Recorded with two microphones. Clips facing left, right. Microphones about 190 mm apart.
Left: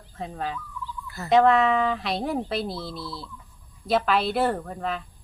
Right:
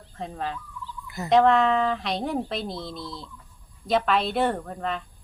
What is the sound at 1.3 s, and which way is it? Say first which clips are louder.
Speech: even; centre (ahead or behind).